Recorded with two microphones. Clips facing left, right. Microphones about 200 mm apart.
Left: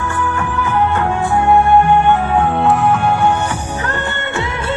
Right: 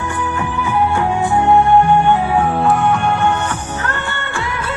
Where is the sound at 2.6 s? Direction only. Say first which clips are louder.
Left 1 dB; centre (ahead or behind); by 4.4 s 15° left (ahead or behind).